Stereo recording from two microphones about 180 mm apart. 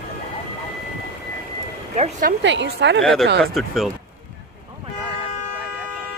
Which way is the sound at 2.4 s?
85° right.